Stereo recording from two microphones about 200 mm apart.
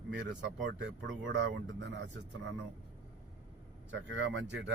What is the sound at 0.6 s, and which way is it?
Speech, 70° right (ahead or behind).